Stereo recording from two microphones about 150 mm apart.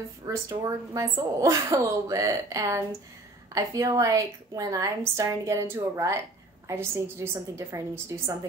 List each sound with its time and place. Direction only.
0.3 s a woman's voice: 20° right (ahead or behind)